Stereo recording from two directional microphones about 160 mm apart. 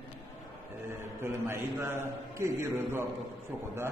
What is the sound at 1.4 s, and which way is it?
A man's voice, 15° right (ahead or behind).